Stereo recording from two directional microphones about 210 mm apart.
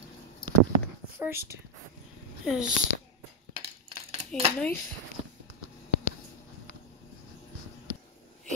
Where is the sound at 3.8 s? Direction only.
30° right (ahead or behind).